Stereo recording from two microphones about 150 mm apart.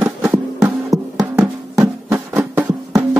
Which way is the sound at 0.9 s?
25° right (ahead or behind).